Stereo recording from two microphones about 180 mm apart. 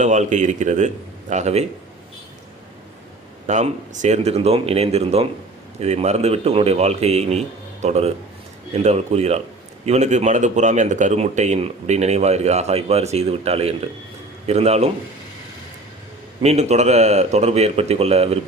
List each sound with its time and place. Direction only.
0.0 s speech: 40° right (ahead or behind)
3.4 s speech: 40° right (ahead or behind)
16.4 s speech: 40° right (ahead or behind)